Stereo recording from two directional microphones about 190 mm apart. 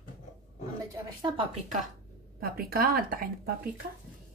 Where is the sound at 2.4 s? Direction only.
50° right (ahead or behind).